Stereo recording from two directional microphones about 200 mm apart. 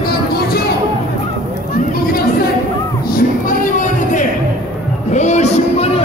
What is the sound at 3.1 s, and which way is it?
Music, 40° left (ahead or behind).